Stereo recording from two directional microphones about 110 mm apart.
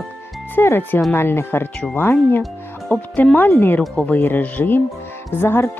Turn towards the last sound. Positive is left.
turn(degrees=20)  # may be behind; listen again after turning